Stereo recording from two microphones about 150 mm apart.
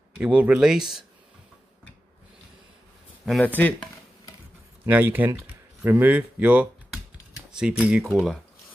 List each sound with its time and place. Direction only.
0.2 s speech: 10° right (ahead or behind)
3.3 s speech: centre (ahead or behind)
3.5 s chopping: 10° left (ahead or behind)
4.8 s speech: 10° right (ahead or behind)